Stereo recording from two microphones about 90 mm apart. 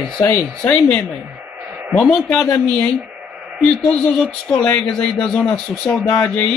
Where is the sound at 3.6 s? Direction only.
5° left (ahead or behind).